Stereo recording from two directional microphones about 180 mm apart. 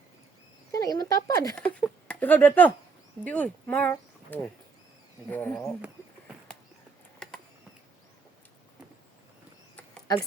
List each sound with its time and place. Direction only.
0.7 s speech: 20° left (ahead or behind)
1.5 s speech: 5° left (ahead or behind)
7.2 s a sound: 5° left (ahead or behind)